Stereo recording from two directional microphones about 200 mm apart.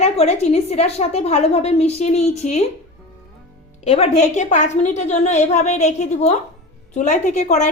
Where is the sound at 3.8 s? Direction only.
35° left (ahead or behind).